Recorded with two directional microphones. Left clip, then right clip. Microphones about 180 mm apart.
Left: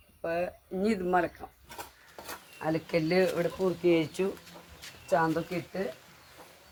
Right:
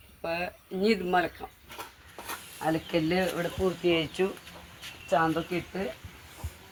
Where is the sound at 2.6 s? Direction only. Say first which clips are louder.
Right 1 dB; 35° left (ahead or behind).